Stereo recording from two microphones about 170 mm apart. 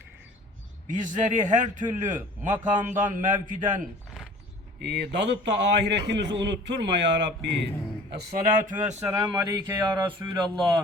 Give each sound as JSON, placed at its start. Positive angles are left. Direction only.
{"t": 0.9, "sound": "a man's voice", "side_deg": -50}
{"t": 4.8, "sound": "a man's voice", "side_deg": -80}
{"t": 8.1, "sound": "music", "side_deg": -60}
{"t": 8.7, "sound": "speech", "side_deg": -5}
{"t": 9.3, "sound": "speech", "side_deg": -25}